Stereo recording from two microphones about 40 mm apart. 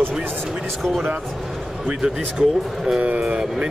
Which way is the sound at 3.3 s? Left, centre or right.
Right.